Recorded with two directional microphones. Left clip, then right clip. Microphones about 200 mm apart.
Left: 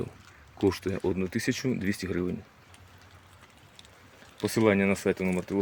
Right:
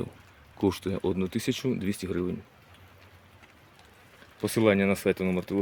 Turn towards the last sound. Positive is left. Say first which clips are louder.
# right 1 dB
turn(degrees=-15)  # may be behind; listen again after turning